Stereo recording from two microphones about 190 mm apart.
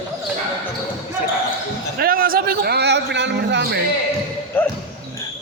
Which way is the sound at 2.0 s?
50° right (ahead or behind).